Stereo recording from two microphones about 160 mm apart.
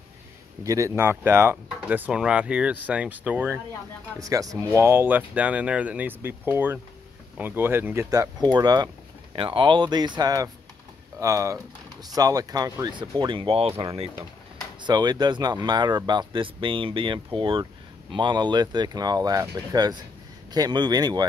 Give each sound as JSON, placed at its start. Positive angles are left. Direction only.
{"t": 0.7, "sound": "speech", "side_deg": -20}